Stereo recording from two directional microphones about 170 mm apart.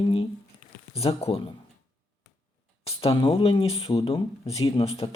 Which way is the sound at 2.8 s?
35° left (ahead or behind).